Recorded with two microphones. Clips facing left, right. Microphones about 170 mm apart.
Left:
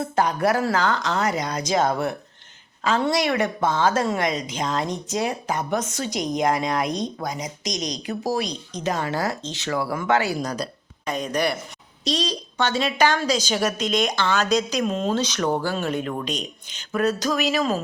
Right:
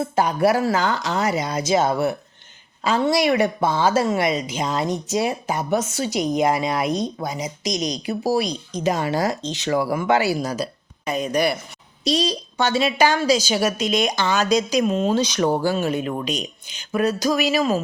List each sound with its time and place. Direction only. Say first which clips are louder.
0.2 s a woman's voice: right 2 dB; 10° right (ahead or behind)